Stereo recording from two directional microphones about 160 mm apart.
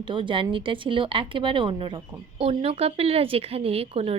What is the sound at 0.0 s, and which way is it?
A woman's voice, 30° right (ahead or behind).